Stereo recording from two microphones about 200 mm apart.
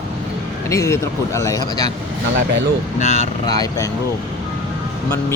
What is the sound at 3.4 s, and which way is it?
Speech, 20° left (ahead or behind).